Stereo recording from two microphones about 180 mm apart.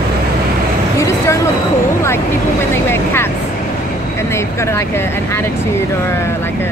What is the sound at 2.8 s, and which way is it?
Speech, 15° left (ahead or behind).